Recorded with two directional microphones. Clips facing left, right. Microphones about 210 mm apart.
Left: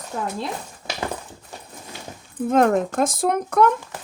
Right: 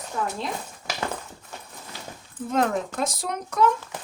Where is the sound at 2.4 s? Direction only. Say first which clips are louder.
Left 6 dB; 50° left (ahead or behind).